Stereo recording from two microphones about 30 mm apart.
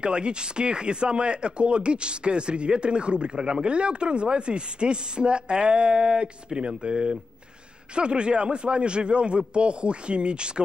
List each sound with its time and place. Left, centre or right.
0.0 s speech: right